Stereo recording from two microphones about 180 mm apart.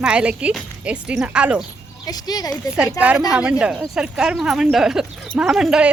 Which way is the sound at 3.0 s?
10° right (ahead or behind).